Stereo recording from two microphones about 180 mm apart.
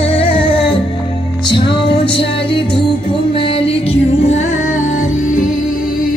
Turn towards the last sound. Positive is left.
turn(degrees=45)  # may be behind; listen again after turning